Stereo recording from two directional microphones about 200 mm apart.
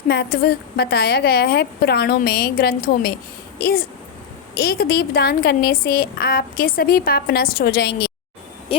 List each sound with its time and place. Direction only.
0.1 s a woman's voice: 50° left (ahead or behind)